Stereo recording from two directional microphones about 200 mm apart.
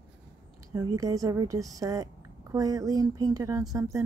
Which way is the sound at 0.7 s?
15° right (ahead or behind).